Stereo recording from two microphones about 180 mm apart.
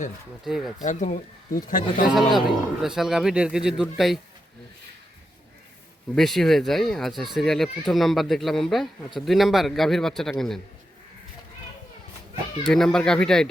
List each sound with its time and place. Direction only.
0.4 s a man's voice: centre (ahead or behind)
0.8 s speech: 45° left (ahead or behind)
2.1 s a man's voice: centre (ahead or behind)
6.1 s a man's voice: centre (ahead or behind)
12.6 s a man's voice: 5° left (ahead or behind)